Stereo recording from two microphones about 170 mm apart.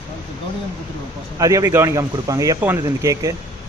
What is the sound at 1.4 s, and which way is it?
Speech, 20° right (ahead or behind).